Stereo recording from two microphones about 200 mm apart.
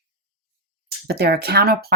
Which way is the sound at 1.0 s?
55° right (ahead or behind).